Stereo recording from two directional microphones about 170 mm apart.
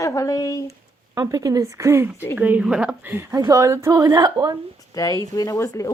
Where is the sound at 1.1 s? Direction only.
20° right (ahead or behind).